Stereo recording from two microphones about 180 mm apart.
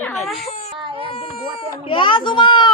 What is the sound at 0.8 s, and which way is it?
Speech, 30° right (ahead or behind).